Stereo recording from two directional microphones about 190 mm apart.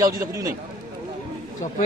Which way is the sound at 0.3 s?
15° right (ahead or behind).